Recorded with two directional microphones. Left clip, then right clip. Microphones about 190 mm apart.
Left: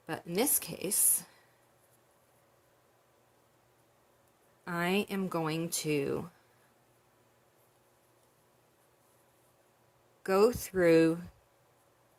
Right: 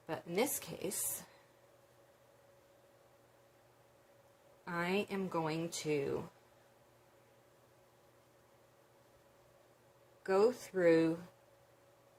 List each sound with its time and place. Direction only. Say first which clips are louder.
0.0 s speech: left 3 dB; 45° left (ahead or behind)
4.6 s speech: left 5 dB; 50° left (ahead or behind)
10.2 s speech: left 5 dB; 50° left (ahead or behind)